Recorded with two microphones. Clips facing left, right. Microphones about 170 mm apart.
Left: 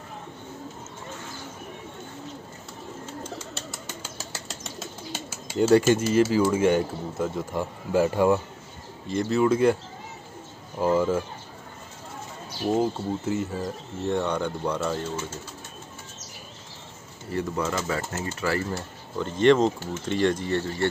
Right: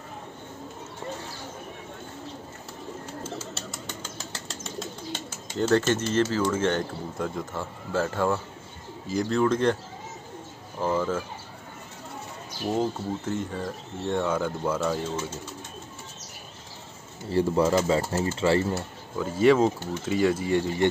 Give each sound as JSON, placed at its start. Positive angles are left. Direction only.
{"t": 3.3, "sound": "bird", "side_deg": 0}
{"t": 7.5, "sound": "speech", "side_deg": 15}
{"t": 9.0, "sound": "speech", "side_deg": 0}
{"t": 10.8, "sound": "speech", "side_deg": 10}
{"t": 12.7, "sound": "speech", "side_deg": 5}
{"t": 17.3, "sound": "speech", "side_deg": -30}
{"t": 18.8, "sound": "speech", "side_deg": -5}